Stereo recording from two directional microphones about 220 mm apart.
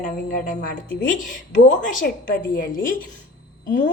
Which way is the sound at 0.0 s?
35° left (ahead or behind).